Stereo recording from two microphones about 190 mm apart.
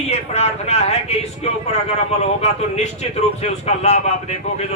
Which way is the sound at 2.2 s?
35° left (ahead or behind).